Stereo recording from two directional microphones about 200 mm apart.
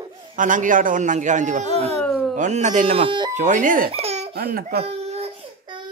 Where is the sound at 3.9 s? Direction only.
30° right (ahead or behind).